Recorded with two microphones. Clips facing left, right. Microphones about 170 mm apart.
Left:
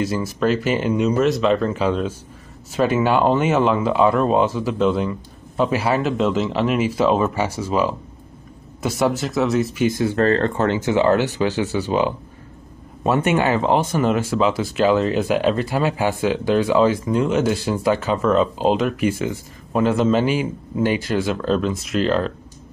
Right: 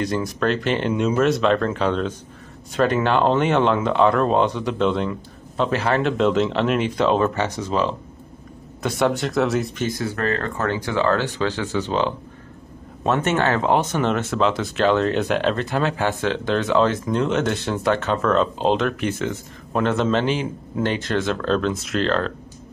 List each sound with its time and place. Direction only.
0.0 s speech: 5° left (ahead or behind)
9.8 s speech: 20° left (ahead or behind)
10.9 s speech: 15° left (ahead or behind)